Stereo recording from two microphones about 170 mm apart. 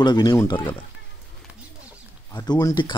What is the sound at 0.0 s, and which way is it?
Speech, 25° left (ahead or behind).